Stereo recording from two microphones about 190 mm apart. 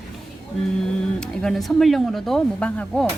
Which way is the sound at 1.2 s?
5° left (ahead or behind).